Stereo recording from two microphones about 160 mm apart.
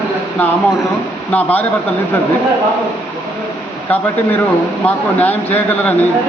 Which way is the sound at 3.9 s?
10° left (ahead or behind).